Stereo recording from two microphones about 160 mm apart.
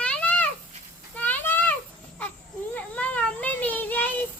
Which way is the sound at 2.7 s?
10° left (ahead or behind).